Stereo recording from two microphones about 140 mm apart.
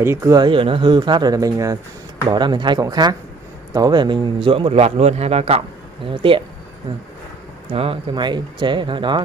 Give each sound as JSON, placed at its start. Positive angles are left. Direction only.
{"t": 0.0, "sound": "speech", "side_deg": -20}
{"t": 0.4, "sound": "a man's voice", "side_deg": -40}
{"t": 7.7, "sound": "speech", "side_deg": -40}